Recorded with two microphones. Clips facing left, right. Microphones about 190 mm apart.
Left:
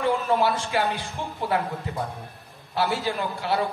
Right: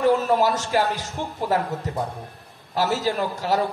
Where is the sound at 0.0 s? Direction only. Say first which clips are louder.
Right 4 dB; 40° right (ahead or behind).